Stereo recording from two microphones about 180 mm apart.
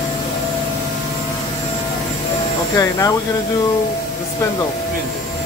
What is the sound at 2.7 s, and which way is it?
Speech, 20° left (ahead or behind).